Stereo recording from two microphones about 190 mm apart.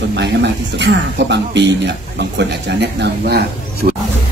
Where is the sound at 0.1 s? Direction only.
65° right (ahead or behind).